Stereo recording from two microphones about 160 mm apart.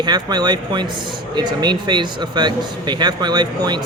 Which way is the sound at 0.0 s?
25° right (ahead or behind).